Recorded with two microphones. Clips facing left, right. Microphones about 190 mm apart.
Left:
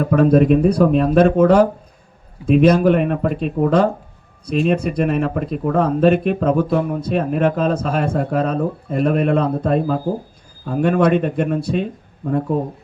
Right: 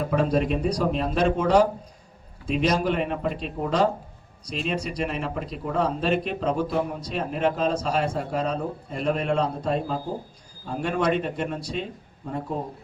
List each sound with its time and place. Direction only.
0.0 s speech: 55° left (ahead or behind)